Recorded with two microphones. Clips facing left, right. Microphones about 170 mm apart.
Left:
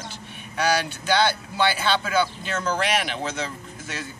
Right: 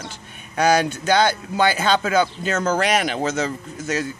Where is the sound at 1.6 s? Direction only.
45° right (ahead or behind).